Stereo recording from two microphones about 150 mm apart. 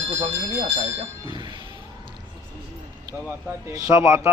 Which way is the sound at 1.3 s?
30° right (ahead or behind).